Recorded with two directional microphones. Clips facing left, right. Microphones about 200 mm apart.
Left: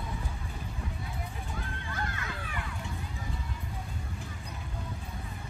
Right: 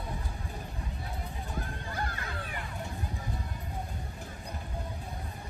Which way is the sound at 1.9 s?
35° right (ahead or behind).